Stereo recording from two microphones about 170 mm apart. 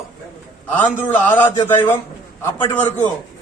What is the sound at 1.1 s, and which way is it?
Speech, 10° left (ahead or behind).